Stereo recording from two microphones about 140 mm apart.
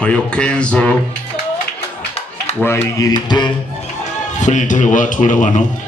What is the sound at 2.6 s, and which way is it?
Speech, 15° left (ahead or behind).